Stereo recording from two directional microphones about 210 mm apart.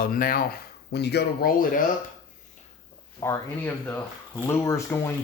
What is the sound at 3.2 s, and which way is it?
Speech, 15° left (ahead or behind).